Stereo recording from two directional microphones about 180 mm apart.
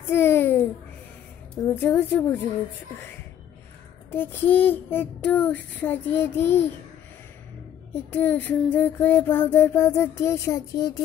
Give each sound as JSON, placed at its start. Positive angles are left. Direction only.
{"t": 0.1, "sound": "a sound", "side_deg": 10}
{"t": 1.8, "sound": "music", "side_deg": 10}
{"t": 4.1, "sound": "music", "side_deg": 10}
{"t": 8.1, "sound": "music", "side_deg": 10}